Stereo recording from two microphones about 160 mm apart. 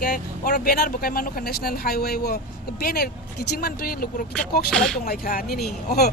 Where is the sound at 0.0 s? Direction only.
80° left.